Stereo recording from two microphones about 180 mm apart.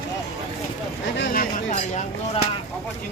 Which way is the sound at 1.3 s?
45° left (ahead or behind).